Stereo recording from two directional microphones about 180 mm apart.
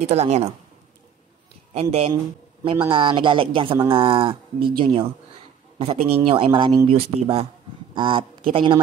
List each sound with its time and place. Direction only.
0.0 s speech: 35° right (ahead or behind)
1.7 s speech: 35° right (ahead or behind)